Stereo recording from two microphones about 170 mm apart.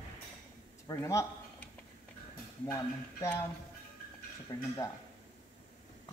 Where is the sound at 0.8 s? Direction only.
15° left (ahead or behind).